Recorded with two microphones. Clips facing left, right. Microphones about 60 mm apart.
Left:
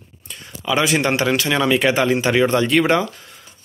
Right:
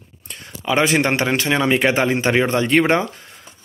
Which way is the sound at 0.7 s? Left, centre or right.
Right.